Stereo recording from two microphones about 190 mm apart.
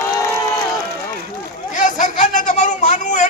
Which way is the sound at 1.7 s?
40° left (ahead or behind).